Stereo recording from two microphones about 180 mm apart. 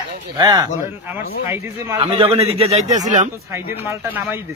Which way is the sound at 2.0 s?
35° right (ahead or behind).